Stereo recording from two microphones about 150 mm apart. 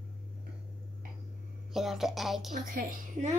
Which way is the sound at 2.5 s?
65° right (ahead or behind).